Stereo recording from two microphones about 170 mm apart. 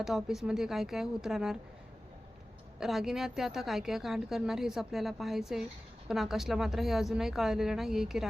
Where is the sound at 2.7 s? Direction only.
Centre (ahead or behind).